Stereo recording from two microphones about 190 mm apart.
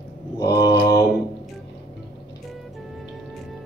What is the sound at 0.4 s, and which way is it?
Mantra, 15° left (ahead or behind).